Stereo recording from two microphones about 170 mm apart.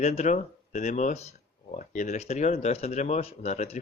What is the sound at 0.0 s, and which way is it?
Speech, 40° left (ahead or behind).